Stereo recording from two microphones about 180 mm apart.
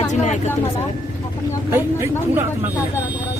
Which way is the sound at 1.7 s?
15° right (ahead or behind).